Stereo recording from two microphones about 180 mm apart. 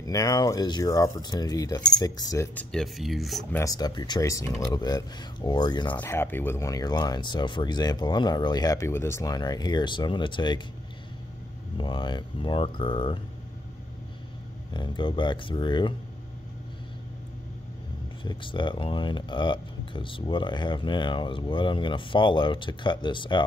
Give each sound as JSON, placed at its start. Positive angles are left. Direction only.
{"t": 0.0, "sound": "speech", "side_deg": 20}
{"t": 2.7, "sound": "speech", "side_deg": 0}
{"t": 3.5, "sound": "speech", "side_deg": 20}
{"t": 5.9, "sound": "speech", "side_deg": 10}
{"t": 11.7, "sound": "speech", "side_deg": 25}
{"t": 14.7, "sound": "speech", "side_deg": 25}
{"t": 18.2, "sound": "speech", "side_deg": 25}